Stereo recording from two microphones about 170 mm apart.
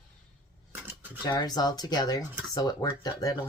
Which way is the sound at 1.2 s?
25° left (ahead or behind).